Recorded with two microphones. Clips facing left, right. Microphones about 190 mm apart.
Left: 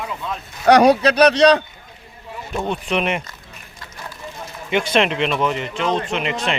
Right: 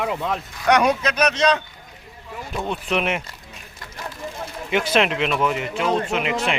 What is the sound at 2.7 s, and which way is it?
Speech, 5° right (ahead or behind).